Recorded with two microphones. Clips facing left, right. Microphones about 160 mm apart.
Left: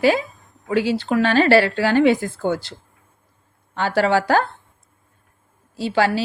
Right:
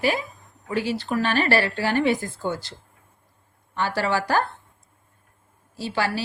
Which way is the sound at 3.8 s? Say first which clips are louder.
Left 6 dB; 80° left.